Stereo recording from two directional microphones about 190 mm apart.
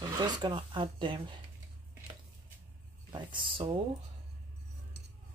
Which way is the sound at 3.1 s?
25° right (ahead or behind).